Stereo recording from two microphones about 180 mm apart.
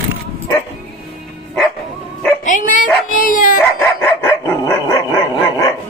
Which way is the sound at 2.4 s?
45° left (ahead or behind).